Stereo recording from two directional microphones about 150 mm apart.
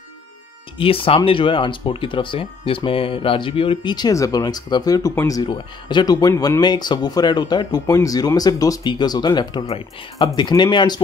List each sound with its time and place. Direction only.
0.7 s speech: 35° left (ahead or behind)